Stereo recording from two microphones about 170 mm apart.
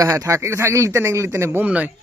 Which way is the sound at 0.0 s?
20° right (ahead or behind).